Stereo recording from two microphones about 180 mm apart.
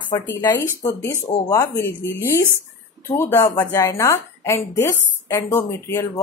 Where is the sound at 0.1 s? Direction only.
20° left (ahead or behind).